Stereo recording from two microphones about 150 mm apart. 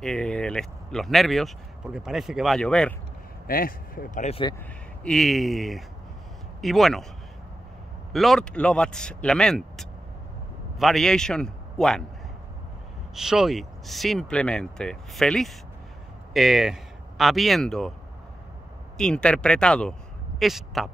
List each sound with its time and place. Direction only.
0.0 s speech: 5° left (ahead or behind)
3.4 s speech: 75° left (ahead or behind)
4.3 s speech: 35° left (ahead or behind)
5.0 s speech: centre (ahead or behind)
8.1 s a man's voice: centre (ahead or behind)
13.1 s speech: 5° right (ahead or behind)
18.9 s speech: 5° left (ahead or behind)